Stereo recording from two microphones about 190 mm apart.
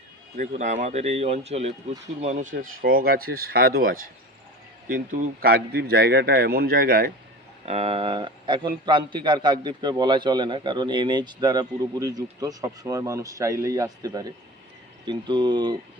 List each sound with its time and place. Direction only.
0.3 s speech: 40° right (ahead or behind)
2.8 s a man's voice: 50° right (ahead or behind)
7.6 s a man's voice: 30° right (ahead or behind)